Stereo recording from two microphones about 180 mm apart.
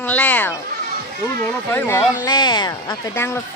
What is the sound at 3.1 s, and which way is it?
Speech, 15° left (ahead or behind).